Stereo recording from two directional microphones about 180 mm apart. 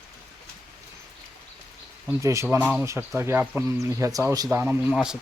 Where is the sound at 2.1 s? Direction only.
15° right (ahead or behind).